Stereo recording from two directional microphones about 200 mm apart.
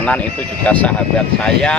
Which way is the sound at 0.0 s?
5° left (ahead or behind).